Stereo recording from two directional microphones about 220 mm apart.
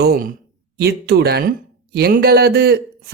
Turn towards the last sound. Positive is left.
turn(degrees=-45)  # may be behind; listen again after turning